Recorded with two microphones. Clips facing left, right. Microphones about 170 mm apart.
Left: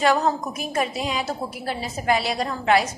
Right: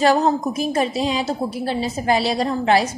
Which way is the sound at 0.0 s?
30° right (ahead or behind).